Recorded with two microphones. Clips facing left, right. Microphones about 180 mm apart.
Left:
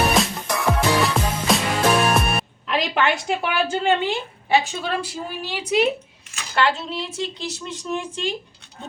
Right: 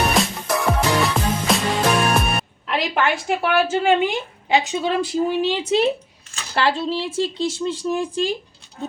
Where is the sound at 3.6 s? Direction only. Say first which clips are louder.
Right 3 dB; 5° right (ahead or behind).